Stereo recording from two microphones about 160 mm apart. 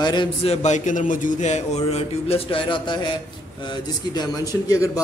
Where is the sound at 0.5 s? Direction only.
45° left (ahead or behind).